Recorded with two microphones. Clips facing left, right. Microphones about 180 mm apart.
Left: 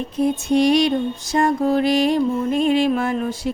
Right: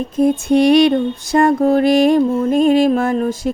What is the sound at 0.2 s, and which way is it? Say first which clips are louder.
Mantra: right 5 dB; 55° right (ahead or behind).